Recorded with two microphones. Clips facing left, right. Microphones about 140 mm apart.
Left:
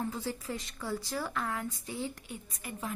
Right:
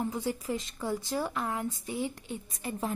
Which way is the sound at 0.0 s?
15° right (ahead or behind).